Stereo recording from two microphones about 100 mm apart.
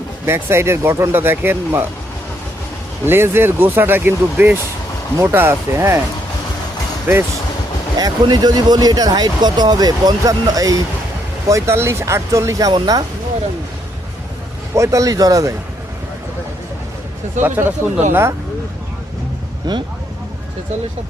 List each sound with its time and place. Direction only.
0.3 s speech: 25° right (ahead or behind)
3.1 s speech: 25° right (ahead or behind)
7.9 s speech: 40° right (ahead or behind)
12.7 s speech: 50° right (ahead or behind)
14.8 s speech: 35° right (ahead or behind)
17.4 s speech: 20° right (ahead or behind)
19.6 s speech: 40° right (ahead or behind)